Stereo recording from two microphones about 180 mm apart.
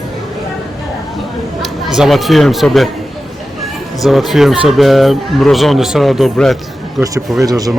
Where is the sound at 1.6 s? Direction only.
Centre (ahead or behind).